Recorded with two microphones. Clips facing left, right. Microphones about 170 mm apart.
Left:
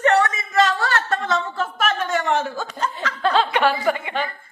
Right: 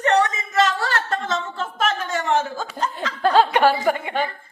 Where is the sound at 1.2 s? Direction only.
25° right (ahead or behind).